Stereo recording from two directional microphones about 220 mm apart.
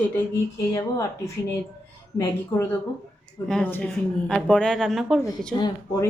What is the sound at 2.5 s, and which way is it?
A woman's voice, 10° left (ahead or behind).